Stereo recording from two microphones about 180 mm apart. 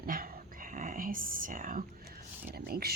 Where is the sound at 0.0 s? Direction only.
50° right (ahead or behind).